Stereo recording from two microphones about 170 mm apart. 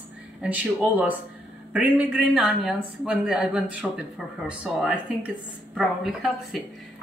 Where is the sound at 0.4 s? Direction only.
10° right (ahead or behind).